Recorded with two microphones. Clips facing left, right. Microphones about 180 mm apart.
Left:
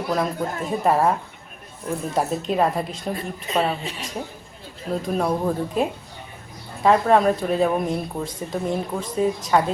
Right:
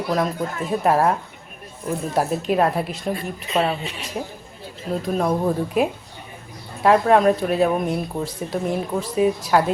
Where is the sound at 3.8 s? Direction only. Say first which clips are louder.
Even; 40° left (ahead or behind).